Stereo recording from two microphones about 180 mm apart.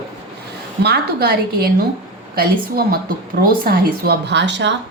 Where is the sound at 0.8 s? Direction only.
60° right (ahead or behind); by 4.7 s 75° right (ahead or behind).